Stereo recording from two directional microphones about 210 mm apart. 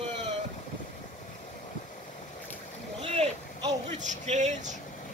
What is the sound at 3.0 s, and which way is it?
Vehicle, 25° right (ahead or behind).